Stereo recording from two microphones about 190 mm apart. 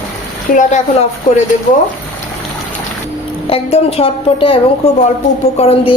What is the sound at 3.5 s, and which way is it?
A woman's voice, 30° left (ahead or behind).